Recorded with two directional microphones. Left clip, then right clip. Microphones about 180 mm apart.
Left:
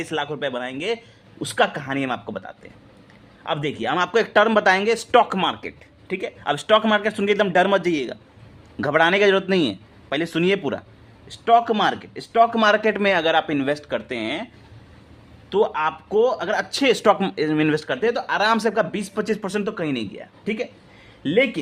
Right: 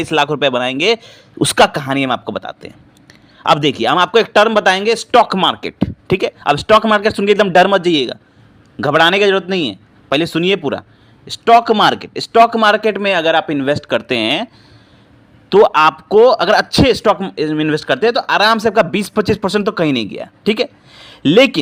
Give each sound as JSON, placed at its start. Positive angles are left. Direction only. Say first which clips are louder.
{"t": 0.0, "sound": "a man's voice", "louder": "right 11 dB", "side_deg": -35}
{"t": 9.2, "sound": "a man's voice", "louder": "right 4 dB", "side_deg": -10}
{"t": 10.1, "sound": "speech", "louder": "right 7 dB", "side_deg": -25}
{"t": 11.3, "sound": "a man's voice", "louder": "right 7 dB", "side_deg": -35}
{"t": 12.5, "sound": "speech", "louder": "right 6 dB", "side_deg": -15}
{"t": 15.4, "sound": "a man's voice", "louder": "right 11 dB", "side_deg": -40}
{"t": 16.9, "sound": "a man's voice", "louder": "right 4 dB", "side_deg": -15}
{"t": 17.8, "sound": "speech", "louder": "right 8 dB", "side_deg": -30}
{"t": 18.8, "sound": "a man's voice", "louder": "right 9 dB", "side_deg": -35}